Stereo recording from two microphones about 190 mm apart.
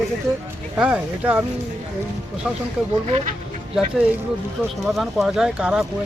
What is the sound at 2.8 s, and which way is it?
Speech, 5° right (ahead or behind).